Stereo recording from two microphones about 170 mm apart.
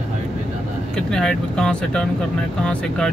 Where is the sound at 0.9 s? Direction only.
5° left (ahead or behind).